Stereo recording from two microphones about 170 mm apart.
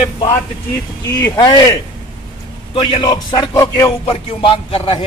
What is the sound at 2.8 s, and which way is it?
A man's voice, 35° left (ahead or behind).